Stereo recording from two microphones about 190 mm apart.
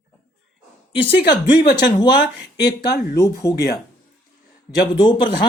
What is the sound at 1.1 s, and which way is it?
Speech, 65° left (ahead or behind).